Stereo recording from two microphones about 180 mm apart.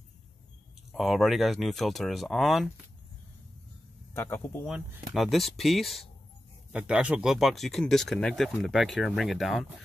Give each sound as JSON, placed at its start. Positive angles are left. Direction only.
{"t": 0.9, "sound": "speech", "side_deg": 0}
{"t": 4.1, "sound": "speech", "side_deg": 15}
{"t": 4.6, "sound": "speech", "side_deg": -5}